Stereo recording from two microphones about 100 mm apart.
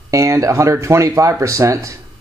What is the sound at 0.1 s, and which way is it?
Speech, 30° right (ahead or behind).